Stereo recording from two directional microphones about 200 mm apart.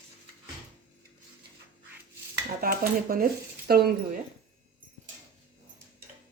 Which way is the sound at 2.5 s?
45° right (ahead or behind).